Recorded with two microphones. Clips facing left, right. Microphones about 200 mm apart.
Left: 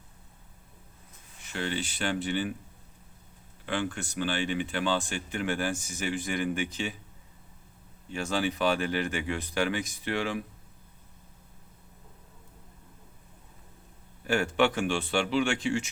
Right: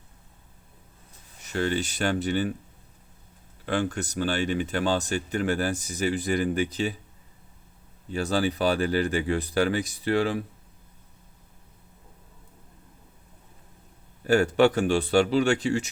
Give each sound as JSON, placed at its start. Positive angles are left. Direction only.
{"t": 1.4, "sound": "speech", "side_deg": -40}
{"t": 3.7, "sound": "speech", "side_deg": -40}
{"t": 8.1, "sound": "speech", "side_deg": -35}
{"t": 14.3, "sound": "speech", "side_deg": -40}